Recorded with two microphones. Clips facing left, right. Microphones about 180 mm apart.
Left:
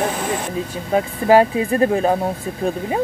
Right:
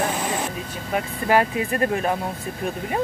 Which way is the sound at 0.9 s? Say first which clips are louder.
Left 7 dB; 30° left (ahead or behind).